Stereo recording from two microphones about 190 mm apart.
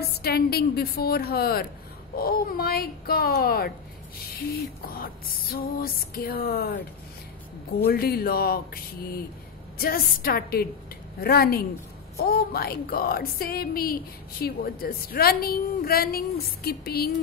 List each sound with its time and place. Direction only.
0.0 s a woman's voice: 55° left (ahead or behind)
4.8 s a woman's voice: 50° left (ahead or behind)